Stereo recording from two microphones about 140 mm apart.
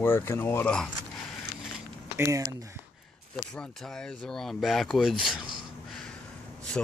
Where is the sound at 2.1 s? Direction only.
20° right (ahead or behind).